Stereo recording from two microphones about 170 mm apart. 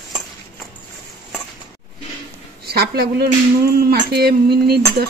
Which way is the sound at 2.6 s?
70° right (ahead or behind).